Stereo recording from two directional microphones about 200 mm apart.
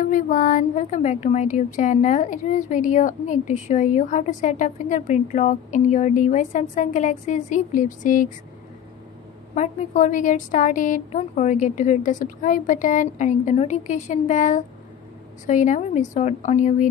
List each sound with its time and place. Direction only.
0.0 s speech: 40° left (ahead or behind)
9.6 s speech: 40° left (ahead or behind)